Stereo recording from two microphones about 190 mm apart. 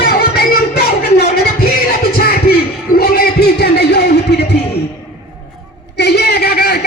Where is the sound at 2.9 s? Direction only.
55° left (ahead or behind).